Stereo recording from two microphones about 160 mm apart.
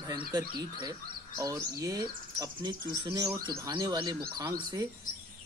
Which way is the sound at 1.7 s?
20° right (ahead or behind).